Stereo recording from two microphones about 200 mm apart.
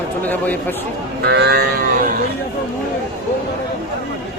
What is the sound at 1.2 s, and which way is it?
Cattle, 55° right (ahead or behind).